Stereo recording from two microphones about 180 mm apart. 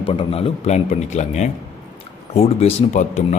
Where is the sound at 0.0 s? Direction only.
30° left (ahead or behind).